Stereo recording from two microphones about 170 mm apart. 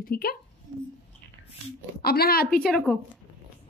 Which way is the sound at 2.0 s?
65° left (ahead or behind).